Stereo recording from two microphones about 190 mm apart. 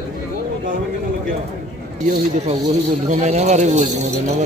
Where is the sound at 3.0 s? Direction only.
40° right (ahead or behind).